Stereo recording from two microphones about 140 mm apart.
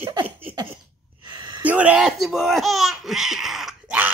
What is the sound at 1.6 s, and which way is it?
Speech, 10° right (ahead or behind).